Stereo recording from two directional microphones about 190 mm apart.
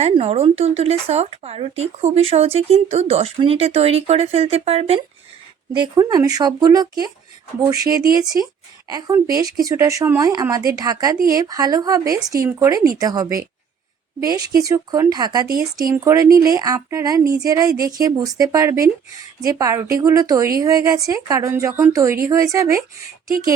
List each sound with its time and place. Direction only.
0.0 s a woman's voice: 35° right (ahead or behind); by 22.8 s 15° right (ahead or behind)